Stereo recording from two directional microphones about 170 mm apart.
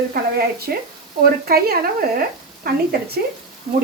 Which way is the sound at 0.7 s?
70° right (ahead or behind).